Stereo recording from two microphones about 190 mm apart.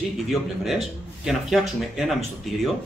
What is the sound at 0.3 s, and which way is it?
A man's voice, centre (ahead or behind).